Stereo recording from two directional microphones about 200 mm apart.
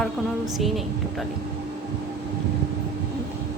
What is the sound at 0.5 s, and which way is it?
Speech, centre (ahead or behind).